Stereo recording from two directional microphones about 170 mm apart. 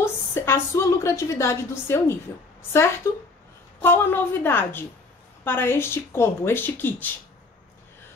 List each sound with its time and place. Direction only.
0.0 s a woman's voice: 15° left (ahead or behind)